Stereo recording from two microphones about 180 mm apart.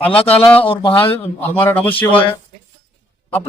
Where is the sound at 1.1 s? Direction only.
10° left (ahead or behind).